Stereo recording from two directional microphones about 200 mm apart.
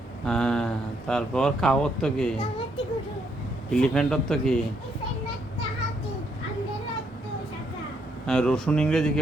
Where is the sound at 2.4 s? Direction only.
25° left (ahead or behind).